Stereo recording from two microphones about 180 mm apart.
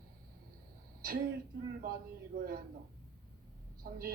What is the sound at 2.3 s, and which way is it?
Speech, 55° right (ahead or behind).